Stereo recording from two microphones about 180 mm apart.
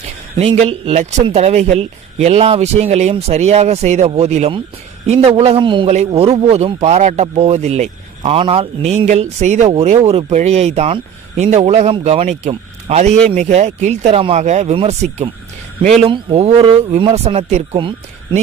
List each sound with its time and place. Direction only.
0.6 s speech: 35° right (ahead or behind)